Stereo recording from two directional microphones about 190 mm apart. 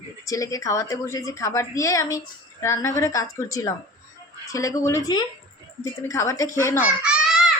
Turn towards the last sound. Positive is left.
turn(degrees=-5)  # may be behind; listen again after turning